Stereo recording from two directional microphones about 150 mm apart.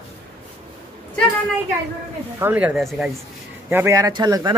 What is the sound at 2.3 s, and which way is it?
Speech, 10° right (ahead or behind).